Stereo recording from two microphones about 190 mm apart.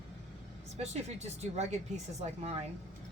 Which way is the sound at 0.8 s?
35° right (ahead or behind).